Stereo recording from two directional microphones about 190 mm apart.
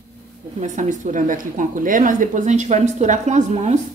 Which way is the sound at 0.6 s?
40° right (ahead or behind).